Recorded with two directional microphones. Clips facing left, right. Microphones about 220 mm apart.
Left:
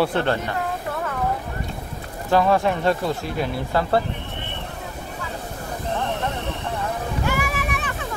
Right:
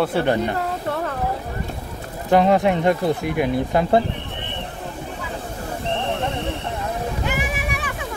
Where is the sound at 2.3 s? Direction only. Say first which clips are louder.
Right 3 dB; 20° right (ahead or behind).